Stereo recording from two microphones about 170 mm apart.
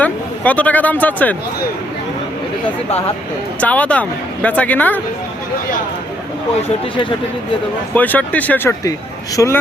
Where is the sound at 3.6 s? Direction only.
10° left (ahead or behind).